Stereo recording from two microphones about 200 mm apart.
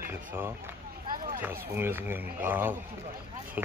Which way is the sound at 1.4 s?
10° right (ahead or behind).